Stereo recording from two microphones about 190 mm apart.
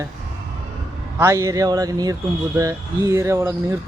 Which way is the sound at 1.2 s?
15° right (ahead or behind).